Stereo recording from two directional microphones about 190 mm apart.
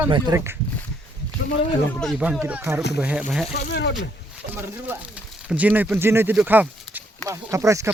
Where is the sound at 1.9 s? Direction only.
Centre (ahead or behind).